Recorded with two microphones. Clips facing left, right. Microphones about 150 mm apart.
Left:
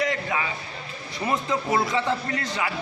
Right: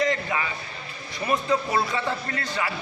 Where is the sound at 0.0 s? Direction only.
10° left (ahead or behind).